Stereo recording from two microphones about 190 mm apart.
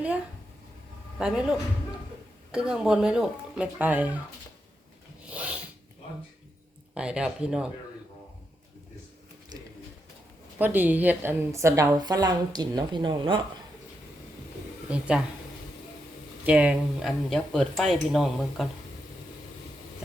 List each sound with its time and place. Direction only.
1.2 s speech: 5° right (ahead or behind)
5.3 s filing: 5° right (ahead or behind)
6.9 s speech: 5° right (ahead or behind)
10.6 s a woman's voice: 10° right (ahead or behind); by 13.4 s 25° right (ahead or behind)
14.8 s speech: 5° right (ahead or behind)
16.5 s speech: 5° right (ahead or behind)